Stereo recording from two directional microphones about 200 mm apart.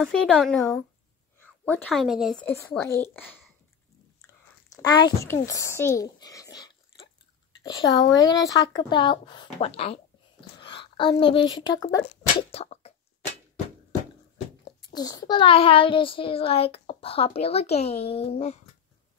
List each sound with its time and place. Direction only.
0.0 s a woman's voice: 5° left (ahead or behind)
2.5 s a child's voice: 10° left (ahead or behind); by 12.9 s 30° left (ahead or behind)
14.9 s a child's voice: 20° left (ahead or behind)